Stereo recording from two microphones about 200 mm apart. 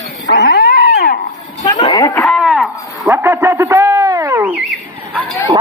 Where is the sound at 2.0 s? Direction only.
15° left (ahead or behind).